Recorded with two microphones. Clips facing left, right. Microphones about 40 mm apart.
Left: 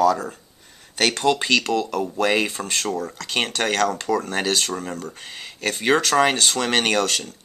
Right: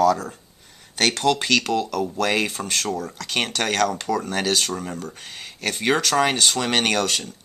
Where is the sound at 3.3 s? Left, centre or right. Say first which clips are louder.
Left 1 dB; centre.